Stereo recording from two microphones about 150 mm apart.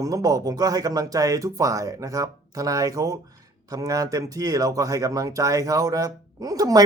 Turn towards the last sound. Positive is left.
turn(degrees=-25)  # may be behind; listen again after turning